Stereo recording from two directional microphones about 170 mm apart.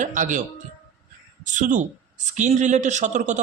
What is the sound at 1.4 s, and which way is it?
A man's voice, 50° right (ahead or behind).